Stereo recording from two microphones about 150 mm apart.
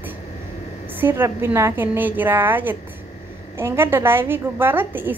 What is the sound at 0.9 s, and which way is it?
A woman's voice, 15° right (ahead or behind).